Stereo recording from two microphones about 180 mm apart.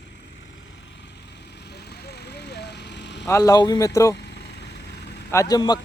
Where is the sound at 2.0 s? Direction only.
65° left (ahead or behind).